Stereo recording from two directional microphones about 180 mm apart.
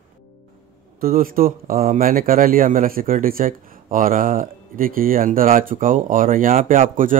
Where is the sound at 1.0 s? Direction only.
50° right (ahead or behind).